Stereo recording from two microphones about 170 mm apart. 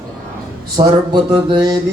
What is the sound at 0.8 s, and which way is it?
Speech, 40° right (ahead or behind).